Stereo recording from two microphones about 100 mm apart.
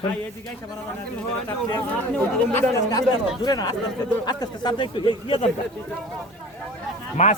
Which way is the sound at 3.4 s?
40° left (ahead or behind).